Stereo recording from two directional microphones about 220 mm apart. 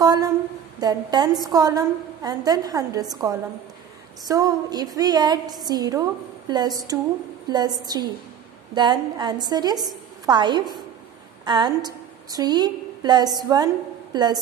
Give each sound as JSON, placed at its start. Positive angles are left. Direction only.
{"t": 0.0, "sound": "humming", "side_deg": -15}
{"t": 0.7, "sound": "a woman's voice", "side_deg": -20}